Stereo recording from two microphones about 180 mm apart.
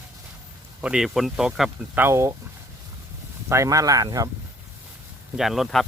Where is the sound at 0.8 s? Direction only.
5° right (ahead or behind).